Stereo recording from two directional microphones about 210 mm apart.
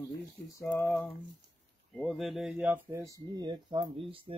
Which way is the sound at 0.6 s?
15° left (ahead or behind).